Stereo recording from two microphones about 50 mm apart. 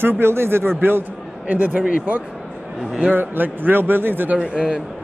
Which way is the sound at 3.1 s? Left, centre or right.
Right.